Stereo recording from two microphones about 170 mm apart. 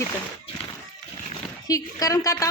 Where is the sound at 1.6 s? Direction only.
20° left (ahead or behind).